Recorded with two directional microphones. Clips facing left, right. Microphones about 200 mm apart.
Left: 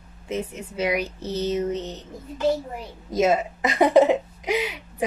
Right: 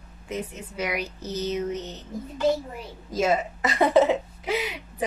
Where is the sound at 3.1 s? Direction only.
20° left (ahead or behind).